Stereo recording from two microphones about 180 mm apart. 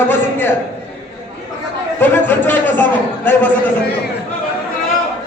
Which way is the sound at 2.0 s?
10° left (ahead or behind).